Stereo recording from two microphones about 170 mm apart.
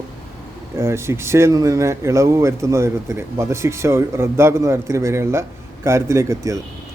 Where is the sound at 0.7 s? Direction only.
15° right (ahead or behind).